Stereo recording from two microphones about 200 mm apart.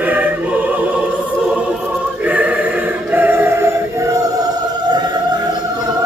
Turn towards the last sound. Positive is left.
turn(degrees=-15)  # may be behind; listen again after turning